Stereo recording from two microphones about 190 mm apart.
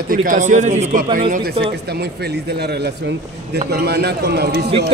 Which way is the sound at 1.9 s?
60° right (ahead or behind).